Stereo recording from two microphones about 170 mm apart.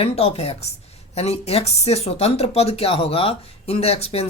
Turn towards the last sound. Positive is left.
turn(degrees=35)  # may be behind; listen again after turning